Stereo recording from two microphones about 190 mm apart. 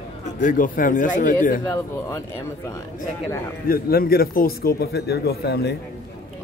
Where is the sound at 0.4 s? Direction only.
45° left (ahead or behind).